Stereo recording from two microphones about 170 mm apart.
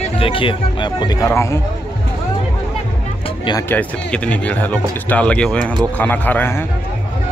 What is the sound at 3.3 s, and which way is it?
Music, 25° left (ahead or behind).